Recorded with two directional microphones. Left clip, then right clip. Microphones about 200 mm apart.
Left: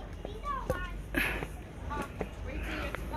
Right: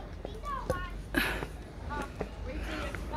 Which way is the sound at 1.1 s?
20° right (ahead or behind).